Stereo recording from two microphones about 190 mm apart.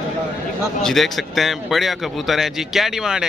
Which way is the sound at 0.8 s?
Centre (ahead or behind).